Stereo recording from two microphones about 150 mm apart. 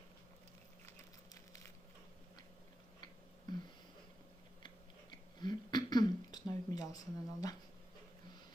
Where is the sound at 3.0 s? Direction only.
30° left (ahead or behind).